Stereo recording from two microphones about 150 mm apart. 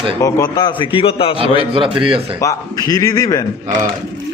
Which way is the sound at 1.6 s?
35° right (ahead or behind).